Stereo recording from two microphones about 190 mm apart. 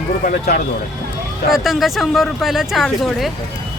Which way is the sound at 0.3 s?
45° left (ahead or behind).